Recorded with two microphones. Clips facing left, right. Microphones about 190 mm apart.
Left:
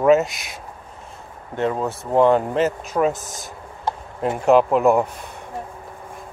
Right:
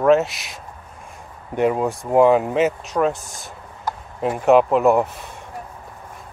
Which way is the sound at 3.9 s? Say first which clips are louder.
Left 2 dB; 25° left (ahead or behind).